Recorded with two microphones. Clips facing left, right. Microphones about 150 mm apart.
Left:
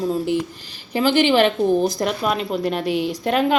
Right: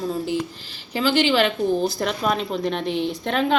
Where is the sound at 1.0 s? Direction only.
50° left (ahead or behind).